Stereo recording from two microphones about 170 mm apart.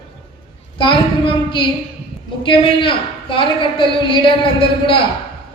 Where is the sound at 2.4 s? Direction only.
30° left (ahead or behind).